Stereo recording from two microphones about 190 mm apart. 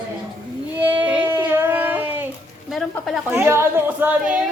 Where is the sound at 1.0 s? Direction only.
10° right (ahead or behind).